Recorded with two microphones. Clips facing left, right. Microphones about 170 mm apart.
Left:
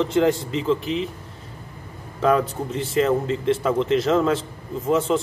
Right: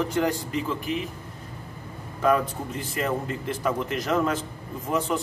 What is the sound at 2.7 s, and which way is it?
A man's voice, 25° left (ahead or behind).